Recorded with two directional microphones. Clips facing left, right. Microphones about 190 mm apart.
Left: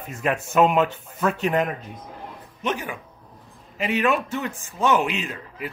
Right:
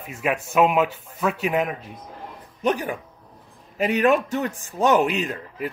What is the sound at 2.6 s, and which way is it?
A man's voice, 40° right (ahead or behind).